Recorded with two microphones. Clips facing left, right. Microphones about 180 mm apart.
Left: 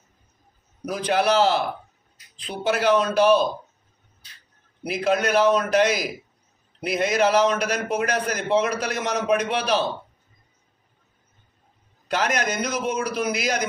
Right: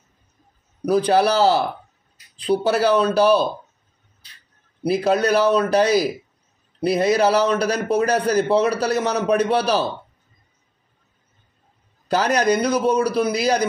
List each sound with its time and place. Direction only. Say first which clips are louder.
0.8 s a man's voice: right 5 dB; 35° right (ahead or behind)
4.8 s a man's voice: right 4 dB; 35° right (ahead or behind)
12.1 s a man's voice: right 6 dB; 35° right (ahead or behind)